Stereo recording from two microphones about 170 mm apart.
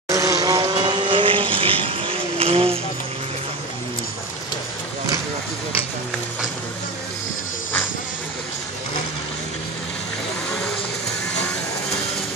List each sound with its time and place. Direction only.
0.1 s vehicle: 20° right (ahead or behind); by 2.8 s 35° right (ahead or behind)